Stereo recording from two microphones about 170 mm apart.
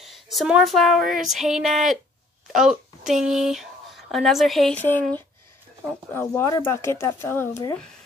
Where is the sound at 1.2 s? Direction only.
Centre (ahead or behind).